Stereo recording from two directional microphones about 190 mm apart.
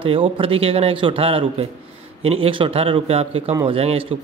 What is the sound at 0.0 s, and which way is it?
Speech, 30° right (ahead or behind).